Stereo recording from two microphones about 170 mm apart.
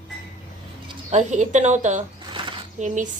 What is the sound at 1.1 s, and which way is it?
Speech, 45° right (ahead or behind).